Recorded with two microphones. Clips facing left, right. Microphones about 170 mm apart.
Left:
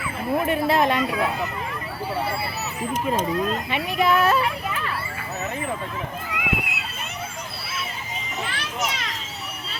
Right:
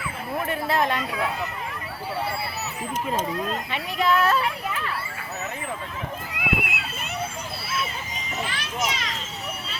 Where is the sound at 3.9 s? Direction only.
10° left (ahead or behind).